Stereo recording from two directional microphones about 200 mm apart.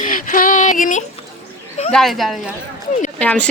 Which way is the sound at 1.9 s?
Centre (ahead or behind).